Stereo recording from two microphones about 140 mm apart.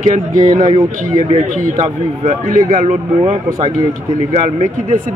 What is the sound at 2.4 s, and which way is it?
Speech, 75° right (ahead or behind).